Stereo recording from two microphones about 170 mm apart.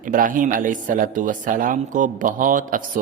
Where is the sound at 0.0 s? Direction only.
50° right (ahead or behind).